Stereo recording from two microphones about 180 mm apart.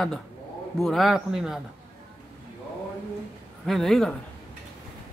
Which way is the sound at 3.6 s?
Centre (ahead or behind).